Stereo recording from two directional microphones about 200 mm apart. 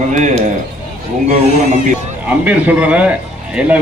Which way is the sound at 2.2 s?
5° right (ahead or behind).